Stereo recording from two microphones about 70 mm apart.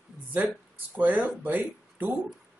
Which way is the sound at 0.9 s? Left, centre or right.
Right.